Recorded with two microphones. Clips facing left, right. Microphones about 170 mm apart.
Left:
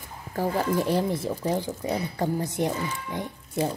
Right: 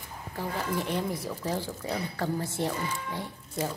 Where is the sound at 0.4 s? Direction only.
40° left (ahead or behind).